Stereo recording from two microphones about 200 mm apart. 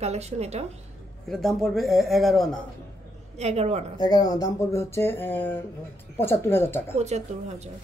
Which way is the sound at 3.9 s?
20° left (ahead or behind).